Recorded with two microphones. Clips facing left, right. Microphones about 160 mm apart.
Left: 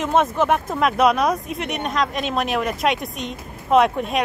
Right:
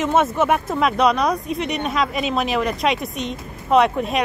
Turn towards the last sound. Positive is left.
turn(degrees=0)  # may be behind; listen again after turning